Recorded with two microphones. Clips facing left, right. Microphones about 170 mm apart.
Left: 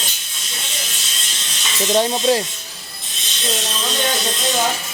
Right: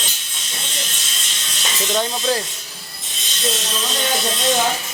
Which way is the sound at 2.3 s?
25° left (ahead or behind).